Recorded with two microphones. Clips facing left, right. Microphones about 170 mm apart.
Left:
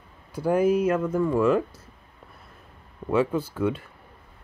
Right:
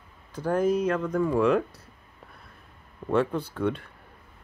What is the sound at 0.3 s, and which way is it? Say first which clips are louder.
Speech: left 3 dB; 10° left (ahead or behind).